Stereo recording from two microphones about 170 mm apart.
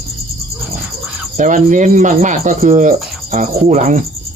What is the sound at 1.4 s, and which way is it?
Speech, 50° right (ahead or behind).